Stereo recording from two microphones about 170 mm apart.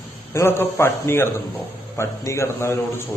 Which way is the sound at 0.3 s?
15° left (ahead or behind).